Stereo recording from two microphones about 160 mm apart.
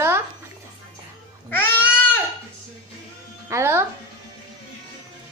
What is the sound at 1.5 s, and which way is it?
Goat, 15° left (ahead or behind).